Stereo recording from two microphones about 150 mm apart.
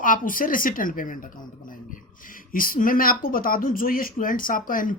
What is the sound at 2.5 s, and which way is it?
Speech, 70° left (ahead or behind).